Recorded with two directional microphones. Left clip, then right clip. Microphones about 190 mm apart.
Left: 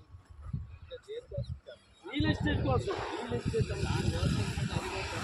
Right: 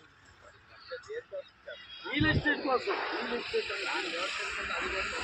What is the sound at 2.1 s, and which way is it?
Speech, 5° left (ahead or behind).